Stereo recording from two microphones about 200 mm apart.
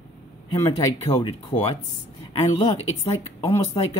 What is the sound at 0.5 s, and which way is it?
Speech, 20° left (ahead or behind).